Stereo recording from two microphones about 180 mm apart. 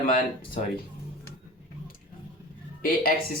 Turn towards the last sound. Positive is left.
turn(degrees=50)  # may be behind; listen again after turning